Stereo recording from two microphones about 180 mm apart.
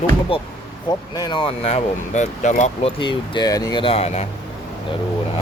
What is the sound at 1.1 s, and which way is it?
Speech, 25° left (ahead or behind).